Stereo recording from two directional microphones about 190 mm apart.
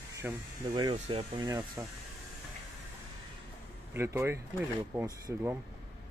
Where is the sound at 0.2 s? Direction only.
5° right (ahead or behind).